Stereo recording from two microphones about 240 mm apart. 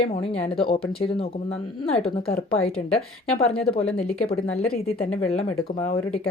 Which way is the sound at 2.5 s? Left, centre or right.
Left.